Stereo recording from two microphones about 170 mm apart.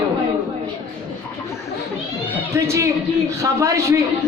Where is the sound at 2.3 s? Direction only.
15° right (ahead or behind).